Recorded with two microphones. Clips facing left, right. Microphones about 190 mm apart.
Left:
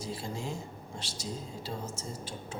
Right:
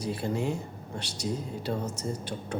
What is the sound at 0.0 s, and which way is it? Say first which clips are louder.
Speech: right 7 dB; 65° right (ahead or behind).